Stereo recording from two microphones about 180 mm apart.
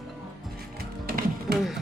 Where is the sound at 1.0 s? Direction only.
55° right (ahead or behind).